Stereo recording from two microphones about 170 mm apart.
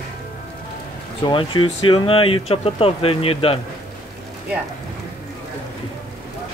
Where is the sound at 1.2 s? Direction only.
30° left (ahead or behind).